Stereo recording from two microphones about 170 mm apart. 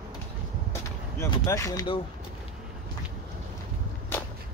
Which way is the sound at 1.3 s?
20° left (ahead or behind).